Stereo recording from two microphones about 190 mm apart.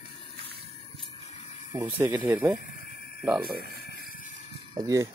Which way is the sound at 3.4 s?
55° right (ahead or behind).